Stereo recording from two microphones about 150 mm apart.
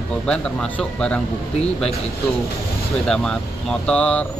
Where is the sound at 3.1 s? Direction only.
5° left (ahead or behind).